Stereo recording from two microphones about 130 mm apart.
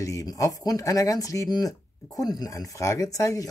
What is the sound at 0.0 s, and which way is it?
Speech, 25° left (ahead or behind).